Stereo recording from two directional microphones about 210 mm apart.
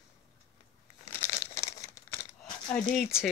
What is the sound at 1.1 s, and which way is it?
Crumpling, 15° left (ahead or behind).